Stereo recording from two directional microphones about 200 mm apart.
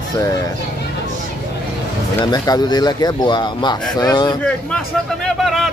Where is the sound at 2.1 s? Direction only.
20° left (ahead or behind).